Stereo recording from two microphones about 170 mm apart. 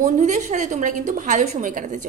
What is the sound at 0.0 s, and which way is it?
A woman's voice, 45° right (ahead or behind).